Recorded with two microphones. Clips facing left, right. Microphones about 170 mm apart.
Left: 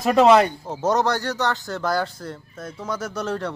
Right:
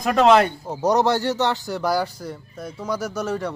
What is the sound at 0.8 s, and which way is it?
A man's voice, 15° right (ahead or behind).